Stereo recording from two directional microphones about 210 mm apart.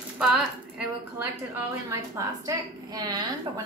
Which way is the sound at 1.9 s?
15° right (ahead or behind).